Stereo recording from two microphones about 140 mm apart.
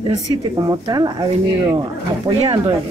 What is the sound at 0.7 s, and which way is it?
Speech, 30° right (ahead or behind).